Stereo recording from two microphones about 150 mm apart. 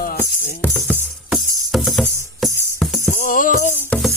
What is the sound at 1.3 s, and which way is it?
Music, centre (ahead or behind).